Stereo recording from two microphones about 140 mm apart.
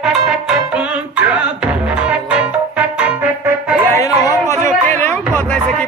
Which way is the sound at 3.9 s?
20° left (ahead or behind).